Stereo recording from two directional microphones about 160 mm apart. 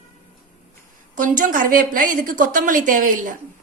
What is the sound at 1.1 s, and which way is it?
A woman's voice, 55° right (ahead or behind).